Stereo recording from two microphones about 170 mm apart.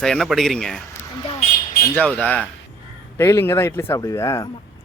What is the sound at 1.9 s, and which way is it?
A man's voice, 10° left (ahead or behind).